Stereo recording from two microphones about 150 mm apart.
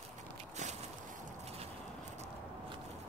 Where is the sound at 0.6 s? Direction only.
55° right (ahead or behind).